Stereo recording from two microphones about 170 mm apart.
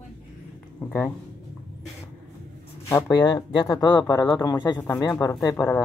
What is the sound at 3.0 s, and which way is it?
Speech, 25° left (ahead or behind).